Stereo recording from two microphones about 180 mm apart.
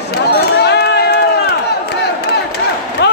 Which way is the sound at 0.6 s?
65° left (ahead or behind).